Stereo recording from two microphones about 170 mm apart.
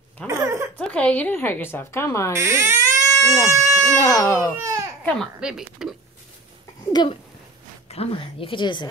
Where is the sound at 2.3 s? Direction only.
15° right (ahead or behind).